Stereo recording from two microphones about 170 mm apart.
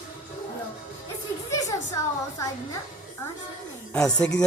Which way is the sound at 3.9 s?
5° left (ahead or behind).